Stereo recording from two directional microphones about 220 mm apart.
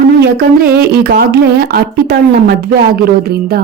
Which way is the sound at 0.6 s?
45° right (ahead or behind).